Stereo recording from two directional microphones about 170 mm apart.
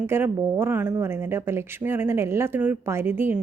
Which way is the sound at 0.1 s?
15° right (ahead or behind).